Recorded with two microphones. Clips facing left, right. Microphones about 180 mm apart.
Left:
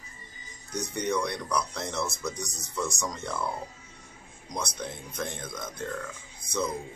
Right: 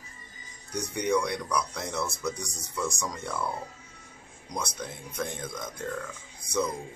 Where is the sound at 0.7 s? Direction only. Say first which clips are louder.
Right 2 dB; 10° right (ahead or behind).